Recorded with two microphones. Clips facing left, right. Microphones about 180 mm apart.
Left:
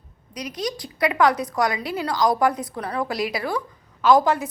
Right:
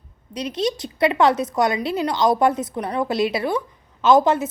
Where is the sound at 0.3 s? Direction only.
25° right (ahead or behind).